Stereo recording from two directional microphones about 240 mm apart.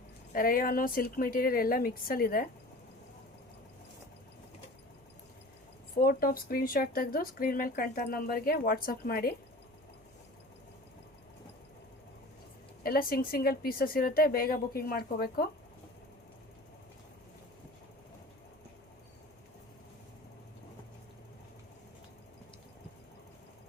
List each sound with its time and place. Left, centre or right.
0.3 s speech: left
6.0 s speech: left
12.8 s speech: left